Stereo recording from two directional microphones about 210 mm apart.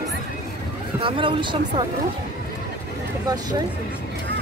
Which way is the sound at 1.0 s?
25° right (ahead or behind).